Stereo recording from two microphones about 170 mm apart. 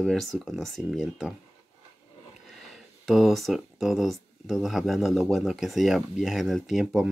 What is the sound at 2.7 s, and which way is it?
Speech, centre (ahead or behind).